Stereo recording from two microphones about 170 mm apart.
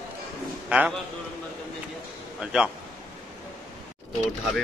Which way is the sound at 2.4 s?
5° right (ahead or behind).